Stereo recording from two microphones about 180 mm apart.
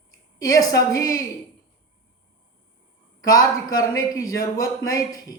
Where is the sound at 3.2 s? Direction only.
20° left (ahead or behind).